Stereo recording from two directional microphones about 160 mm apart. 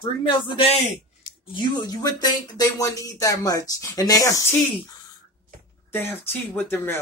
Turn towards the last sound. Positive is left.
turn(degrees=15)  # may be behind; listen again after turning